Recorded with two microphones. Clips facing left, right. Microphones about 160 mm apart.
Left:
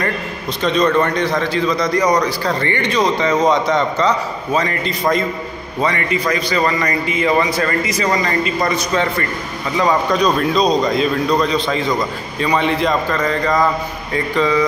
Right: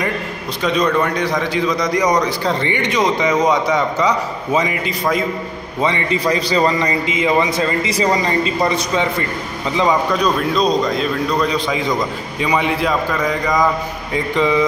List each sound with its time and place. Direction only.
0.7 s a man's voice: 10° right (ahead or behind)
5.8 s a man's voice: 20° right (ahead or behind)
9.8 s a man's voice: 5° right (ahead or behind); by 14.7 s 20° right (ahead or behind)